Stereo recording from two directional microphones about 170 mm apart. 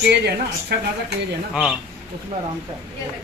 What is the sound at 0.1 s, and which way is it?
Speech, 75° right (ahead or behind).